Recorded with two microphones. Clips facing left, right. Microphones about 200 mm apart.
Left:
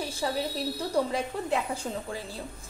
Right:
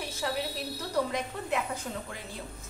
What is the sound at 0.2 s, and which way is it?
A woman's voice, 30° left (ahead or behind).